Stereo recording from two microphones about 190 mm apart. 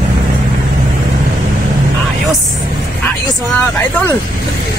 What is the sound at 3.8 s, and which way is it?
Vehicle, 10° left (ahead or behind).